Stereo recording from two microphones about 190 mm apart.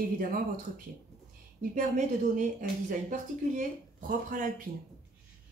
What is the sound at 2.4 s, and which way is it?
Speech, 45° right (ahead or behind).